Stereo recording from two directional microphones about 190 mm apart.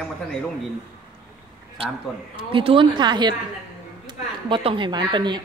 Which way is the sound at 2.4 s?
25° right (ahead or behind).